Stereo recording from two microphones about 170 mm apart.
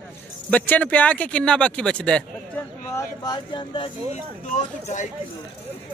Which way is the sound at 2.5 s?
10° left (ahead or behind).